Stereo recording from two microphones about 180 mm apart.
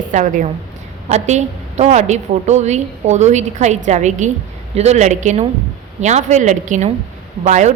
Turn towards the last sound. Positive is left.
turn(degrees=-40)  # may be behind; listen again after turning